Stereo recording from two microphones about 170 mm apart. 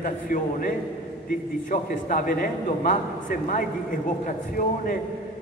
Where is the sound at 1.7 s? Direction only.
55° left (ahead or behind).